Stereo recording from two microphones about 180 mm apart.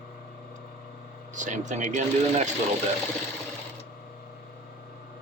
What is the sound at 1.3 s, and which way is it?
Speech, 40° right (ahead or behind).